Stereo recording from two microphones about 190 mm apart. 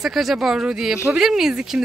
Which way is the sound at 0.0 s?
Centre (ahead or behind).